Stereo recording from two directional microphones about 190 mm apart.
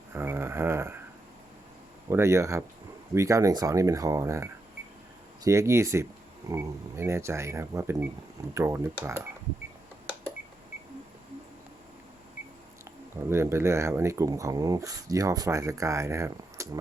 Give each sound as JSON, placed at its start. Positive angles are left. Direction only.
{"t": 0.1, "sound": "a sound", "side_deg": -10}
{"t": 2.0, "sound": "speech", "side_deg": -15}
{"t": 13.3, "sound": "speech", "side_deg": -15}